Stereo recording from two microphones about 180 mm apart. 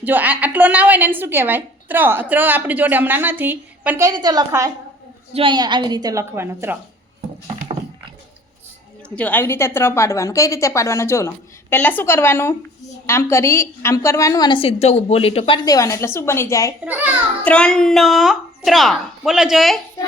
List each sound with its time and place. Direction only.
0.0 s a woman's voice: 10° right (ahead or behind)
4.1 s a woman's voice: 25° right (ahead or behind)
9.0 s a woman's voice: 5° left (ahead or behind)
16.8 s a woman's voice: 10° right (ahead or behind)
17.4 s a woman's voice: 5° left (ahead or behind)